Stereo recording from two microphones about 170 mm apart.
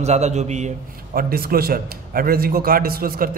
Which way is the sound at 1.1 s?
60° right (ahead or behind).